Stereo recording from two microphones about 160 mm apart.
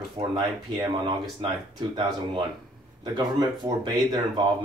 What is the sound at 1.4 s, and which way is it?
Speech, 30° right (ahead or behind).